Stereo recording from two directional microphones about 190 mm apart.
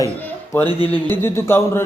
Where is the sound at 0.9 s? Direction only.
10° left (ahead or behind).